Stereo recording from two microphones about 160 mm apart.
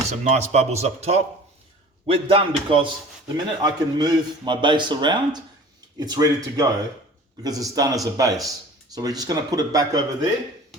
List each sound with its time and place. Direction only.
0.3 s a man's voice: 45° right (ahead or behind); by 10.2 s 25° right (ahead or behind)